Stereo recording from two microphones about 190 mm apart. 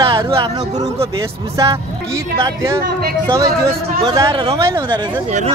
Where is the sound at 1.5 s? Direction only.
15° right (ahead or behind).